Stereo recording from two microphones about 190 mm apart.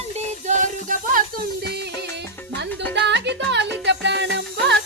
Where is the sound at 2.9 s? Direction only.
65° right (ahead or behind).